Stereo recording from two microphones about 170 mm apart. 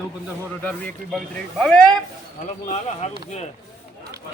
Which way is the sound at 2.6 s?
40° left (ahead or behind).